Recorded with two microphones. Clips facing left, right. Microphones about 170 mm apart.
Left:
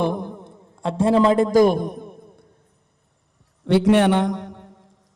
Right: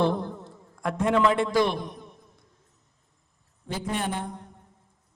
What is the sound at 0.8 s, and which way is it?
A man's voice, 30° left (ahead or behind).